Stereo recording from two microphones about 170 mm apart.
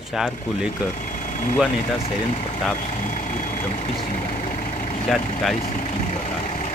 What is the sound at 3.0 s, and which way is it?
Vehicle, 45° left (ahead or behind).